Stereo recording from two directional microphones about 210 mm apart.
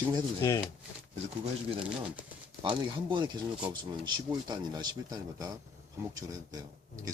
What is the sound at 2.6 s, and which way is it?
Speech, 25° right (ahead or behind).